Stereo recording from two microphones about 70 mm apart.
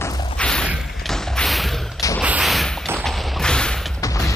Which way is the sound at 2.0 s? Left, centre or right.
Left.